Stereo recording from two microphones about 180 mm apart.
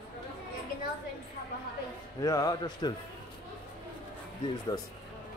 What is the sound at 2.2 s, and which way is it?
Speech, 20° left (ahead or behind).